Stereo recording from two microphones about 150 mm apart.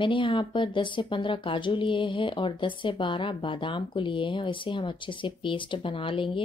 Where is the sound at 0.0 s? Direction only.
35° left (ahead or behind).